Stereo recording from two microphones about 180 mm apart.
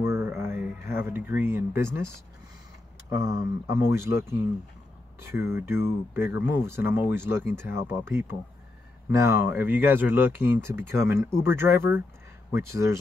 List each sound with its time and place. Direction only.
0.0 s a sound: 15° right (ahead or behind)
0.8 s speech: 15° right (ahead or behind)
3.1 s speech: 15° right (ahead or behind)
7.5 s speech: 70° left (ahead or behind)
8.1 s speech: 15° right (ahead or behind)